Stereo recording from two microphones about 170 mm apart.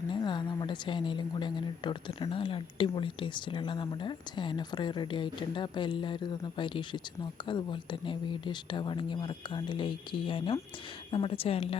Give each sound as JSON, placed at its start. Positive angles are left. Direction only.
{"t": 0.1, "sound": "speech", "side_deg": 25}